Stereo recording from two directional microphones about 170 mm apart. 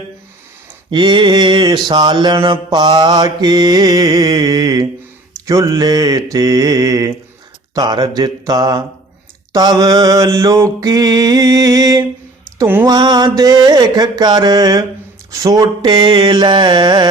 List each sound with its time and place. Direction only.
0.9 s mantra: 25° right (ahead or behind)
12.5 s a sound: 10° right (ahead or behind)
12.8 s mantra: 25° right (ahead or behind)